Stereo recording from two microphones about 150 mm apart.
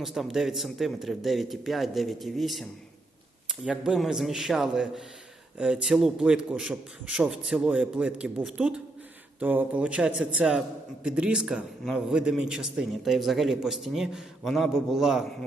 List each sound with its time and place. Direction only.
0.0 s a man's voice: centre (ahead or behind)